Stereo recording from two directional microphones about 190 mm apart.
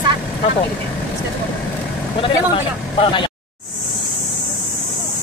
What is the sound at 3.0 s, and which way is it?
Speech, 25° left (ahead or behind).